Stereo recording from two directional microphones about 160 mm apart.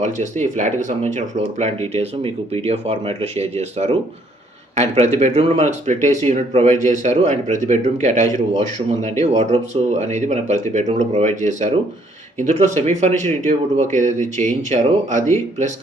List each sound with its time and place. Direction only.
0.0 s speech: 50° right (ahead or behind)